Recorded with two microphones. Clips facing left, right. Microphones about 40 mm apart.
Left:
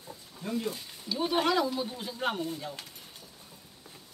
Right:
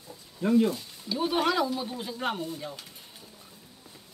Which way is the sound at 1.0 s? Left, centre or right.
Centre.